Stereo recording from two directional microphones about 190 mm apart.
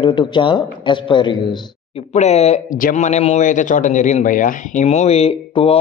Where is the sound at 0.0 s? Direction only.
25° left (ahead or behind).